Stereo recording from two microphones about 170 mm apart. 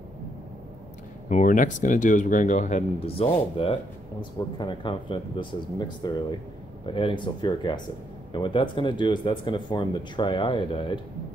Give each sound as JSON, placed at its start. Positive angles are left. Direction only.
{"t": 1.3, "sound": "speech", "side_deg": 50}